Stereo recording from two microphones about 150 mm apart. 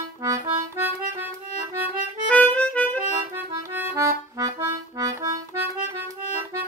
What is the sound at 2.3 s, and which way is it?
Harmonica, 10° left (ahead or behind).